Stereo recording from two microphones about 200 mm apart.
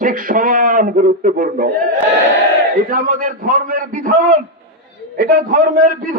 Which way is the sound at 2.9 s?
45° right (ahead or behind).